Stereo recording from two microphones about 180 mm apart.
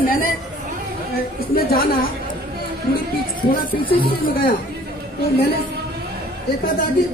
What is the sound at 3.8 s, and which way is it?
Speech, 55° left (ahead or behind).